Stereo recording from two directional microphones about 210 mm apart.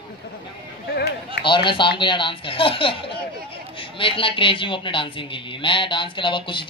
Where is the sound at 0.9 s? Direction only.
50° left (ahead or behind).